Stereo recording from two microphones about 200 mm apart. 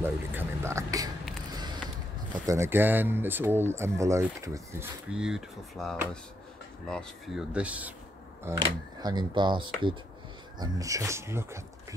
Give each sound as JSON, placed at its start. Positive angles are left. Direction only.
{"t": 0.0, "sound": "a sound", "side_deg": -10}
{"t": 2.4, "sound": "speech", "side_deg": -15}
{"t": 5.1, "sound": "speech", "side_deg": -5}
{"t": 8.5, "sound": "speech", "side_deg": -20}